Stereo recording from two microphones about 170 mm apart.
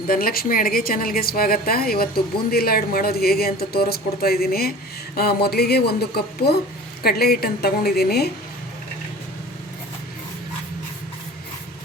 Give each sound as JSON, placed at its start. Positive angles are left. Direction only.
{"t": 0.1, "sound": "a woman's voice", "side_deg": 60}